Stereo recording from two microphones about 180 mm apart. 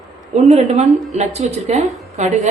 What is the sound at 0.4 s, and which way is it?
A woman's voice, 40° right (ahead or behind).